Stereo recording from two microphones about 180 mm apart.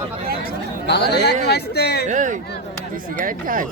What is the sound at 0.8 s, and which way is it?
Speech, 65° left (ahead or behind).